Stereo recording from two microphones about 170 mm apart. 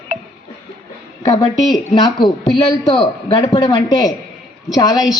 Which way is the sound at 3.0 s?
25° left (ahead or behind).